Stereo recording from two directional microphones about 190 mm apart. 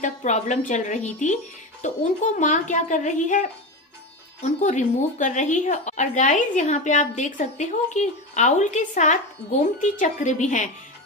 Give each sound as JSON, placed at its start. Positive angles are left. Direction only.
{"t": 0.0, "sound": "a woman's voice", "side_deg": 40}
{"t": 4.4, "sound": "a woman's voice", "side_deg": 40}